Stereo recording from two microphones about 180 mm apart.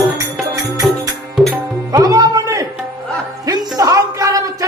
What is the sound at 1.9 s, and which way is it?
Music, 20° right (ahead or behind).